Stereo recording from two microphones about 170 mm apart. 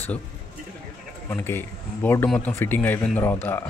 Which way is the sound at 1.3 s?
15° left (ahead or behind).